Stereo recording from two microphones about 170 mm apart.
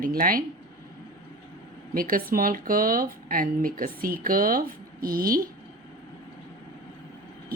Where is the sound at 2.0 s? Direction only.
55° right (ahead or behind).